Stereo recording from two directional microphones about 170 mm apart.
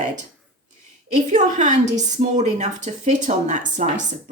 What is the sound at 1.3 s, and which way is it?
A woman's voice, 45° right (ahead or behind).